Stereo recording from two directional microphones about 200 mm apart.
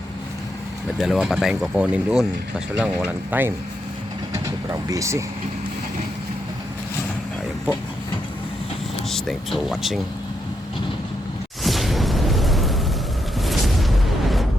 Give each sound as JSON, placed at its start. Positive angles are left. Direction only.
{"t": 0.9, "sound": "speech", "side_deg": 0}
{"t": 9.0, "sound": "speech", "side_deg": 0}
{"t": 11.6, "sound": "a sound", "side_deg": 0}
{"t": 13.4, "sound": "music", "side_deg": 0}